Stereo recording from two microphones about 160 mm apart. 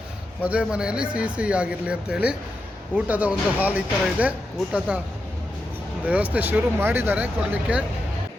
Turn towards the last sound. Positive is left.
turn(degrees=-10)  # may be behind; listen again after turning